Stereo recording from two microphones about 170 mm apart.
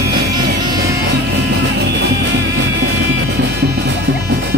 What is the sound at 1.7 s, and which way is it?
Music, 80° right.